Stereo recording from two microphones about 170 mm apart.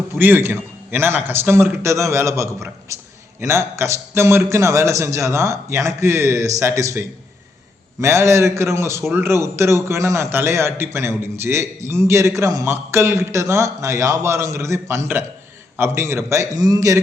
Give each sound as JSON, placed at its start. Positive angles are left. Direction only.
{"t": 0.1, "sound": "a man's voice", "side_deg": -10}
{"t": 8.0, "sound": "a man's voice", "side_deg": -15}